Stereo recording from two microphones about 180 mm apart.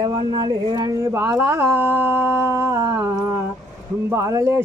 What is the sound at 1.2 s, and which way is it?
Speech, 10° right (ahead or behind).